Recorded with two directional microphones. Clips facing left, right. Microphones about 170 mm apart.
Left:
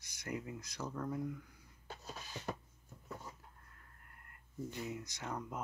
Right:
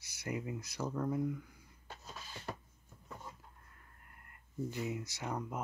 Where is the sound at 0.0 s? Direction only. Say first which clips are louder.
Right 3 dB; 10° right (ahead or behind).